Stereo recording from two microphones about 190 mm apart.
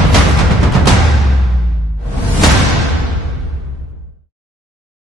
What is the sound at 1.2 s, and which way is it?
Music, centre (ahead or behind).